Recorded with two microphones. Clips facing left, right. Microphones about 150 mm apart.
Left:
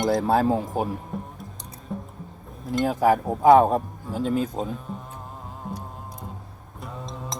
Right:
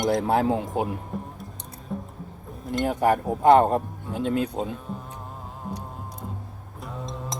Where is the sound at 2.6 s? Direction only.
Centre (ahead or behind).